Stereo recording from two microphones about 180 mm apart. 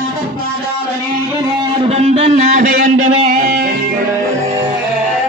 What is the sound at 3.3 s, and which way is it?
Music, 55° right (ahead or behind).